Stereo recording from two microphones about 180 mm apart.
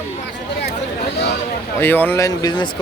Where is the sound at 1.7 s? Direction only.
10° left (ahead or behind).